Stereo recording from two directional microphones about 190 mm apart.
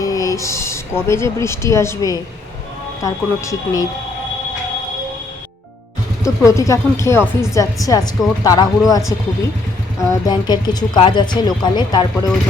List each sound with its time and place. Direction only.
0.0 s speech: 20° left (ahead or behind)
6.2 s speech: 15° left (ahead or behind)